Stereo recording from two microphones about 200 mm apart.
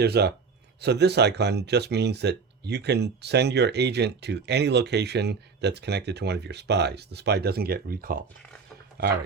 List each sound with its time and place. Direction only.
0.0 s speech: 55° right (ahead or behind)